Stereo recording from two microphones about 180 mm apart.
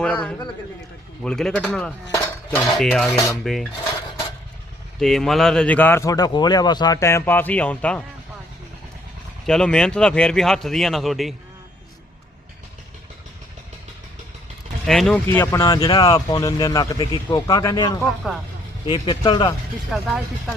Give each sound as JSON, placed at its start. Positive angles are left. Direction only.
{"t": 0.0, "sound": "speech", "side_deg": 5}
{"t": 2.1, "sound": "cutlery", "side_deg": 10}
{"t": 3.4, "sound": "speech", "side_deg": 0}
{"t": 4.9, "sound": "a man's voice", "side_deg": 0}
{"t": 9.5, "sound": "speech", "side_deg": 5}
{"t": 14.8, "sound": "speech", "side_deg": 0}
{"t": 15.3, "sound": "a man's voice", "side_deg": 15}
{"t": 15.6, "sound": "speech", "side_deg": 25}
{"t": 19.9, "sound": "speech", "side_deg": 0}